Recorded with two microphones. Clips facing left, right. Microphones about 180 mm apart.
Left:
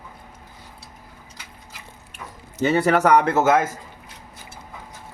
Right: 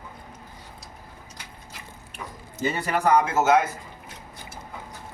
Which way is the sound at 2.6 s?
75° left (ahead or behind).